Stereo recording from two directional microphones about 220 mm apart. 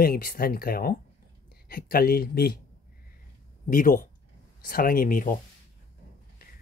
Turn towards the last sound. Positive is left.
turn(degrees=40)  # may be behind; listen again after turning